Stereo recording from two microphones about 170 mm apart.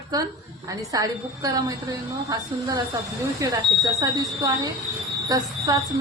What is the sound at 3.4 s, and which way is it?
A woman's voice, 20° right (ahead or behind).